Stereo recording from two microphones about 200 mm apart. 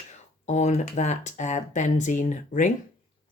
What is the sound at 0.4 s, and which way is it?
Speech, 35° left (ahead or behind).